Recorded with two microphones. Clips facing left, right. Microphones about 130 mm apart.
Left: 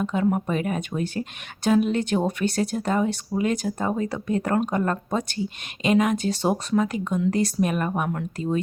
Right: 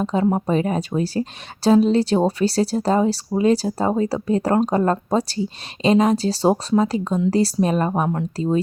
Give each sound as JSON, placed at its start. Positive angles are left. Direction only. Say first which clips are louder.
{"t": 0.0, "sound": "speech", "louder": "right 3 dB", "side_deg": -30}